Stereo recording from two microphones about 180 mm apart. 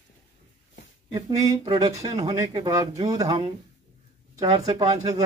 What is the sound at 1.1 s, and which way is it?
Speech, 25° right (ahead or behind).